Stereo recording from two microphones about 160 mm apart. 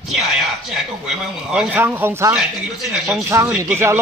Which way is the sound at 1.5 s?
10° right (ahead or behind).